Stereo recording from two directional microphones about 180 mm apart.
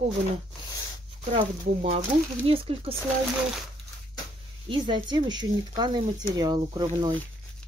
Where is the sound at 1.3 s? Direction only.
35° right (ahead or behind).